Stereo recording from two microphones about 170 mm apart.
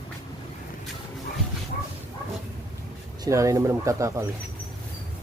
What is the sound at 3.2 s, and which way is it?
Speech, 20° right (ahead or behind).